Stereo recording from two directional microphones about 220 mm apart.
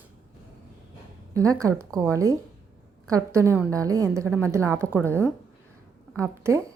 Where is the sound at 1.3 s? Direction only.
15° right (ahead or behind).